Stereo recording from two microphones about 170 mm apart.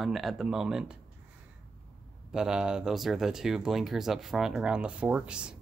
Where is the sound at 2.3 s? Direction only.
5° right (ahead or behind).